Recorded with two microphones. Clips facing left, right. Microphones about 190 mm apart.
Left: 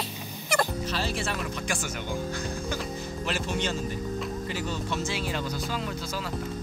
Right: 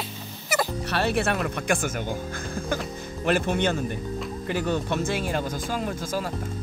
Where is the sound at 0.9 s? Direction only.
60° right (ahead or behind).